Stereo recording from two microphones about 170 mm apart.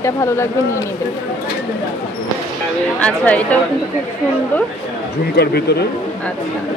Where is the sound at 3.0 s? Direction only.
10° left (ahead or behind).